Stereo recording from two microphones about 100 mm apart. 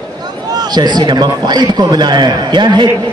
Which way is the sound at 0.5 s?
45° right (ahead or behind).